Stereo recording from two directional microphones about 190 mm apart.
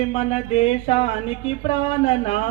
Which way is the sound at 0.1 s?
35° left (ahead or behind).